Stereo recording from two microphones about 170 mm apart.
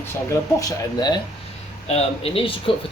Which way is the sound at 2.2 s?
35° left (ahead or behind).